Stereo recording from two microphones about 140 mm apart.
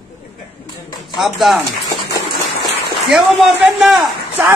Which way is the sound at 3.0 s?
Centre (ahead or behind).